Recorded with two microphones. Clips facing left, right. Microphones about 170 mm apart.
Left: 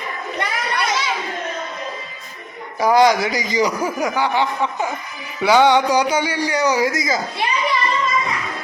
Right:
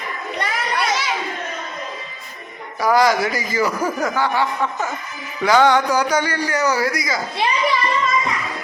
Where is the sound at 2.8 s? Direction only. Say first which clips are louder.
Left 2 dB; 20° left (ahead or behind).